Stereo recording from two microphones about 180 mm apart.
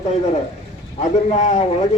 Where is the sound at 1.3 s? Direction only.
40° left (ahead or behind).